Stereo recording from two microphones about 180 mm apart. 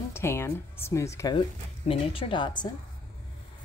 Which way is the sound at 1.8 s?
35° left (ahead or behind).